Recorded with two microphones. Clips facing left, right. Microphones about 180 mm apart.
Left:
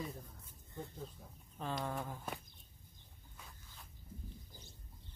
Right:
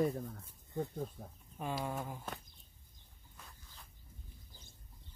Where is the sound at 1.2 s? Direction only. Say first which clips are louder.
Right 7 dB; 50° right (ahead or behind).